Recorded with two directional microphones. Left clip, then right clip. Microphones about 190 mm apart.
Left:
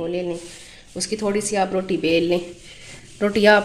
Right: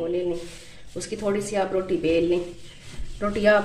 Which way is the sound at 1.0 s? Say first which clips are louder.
Left 3 dB; 40° left (ahead or behind).